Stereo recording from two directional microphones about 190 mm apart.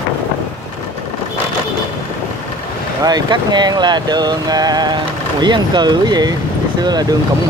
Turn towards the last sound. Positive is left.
turn(degrees=-20)  # may be behind; listen again after turning